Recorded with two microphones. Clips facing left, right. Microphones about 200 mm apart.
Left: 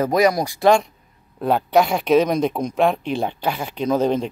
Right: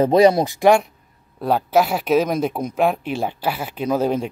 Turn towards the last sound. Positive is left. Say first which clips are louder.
# left 1 dB
turn(degrees=-10)  # may be behind; listen again after turning